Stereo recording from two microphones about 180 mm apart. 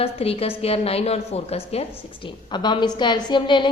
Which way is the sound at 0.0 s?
35° left (ahead or behind).